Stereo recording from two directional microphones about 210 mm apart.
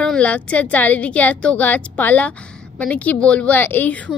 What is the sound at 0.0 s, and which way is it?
Speech, 5° left (ahead or behind).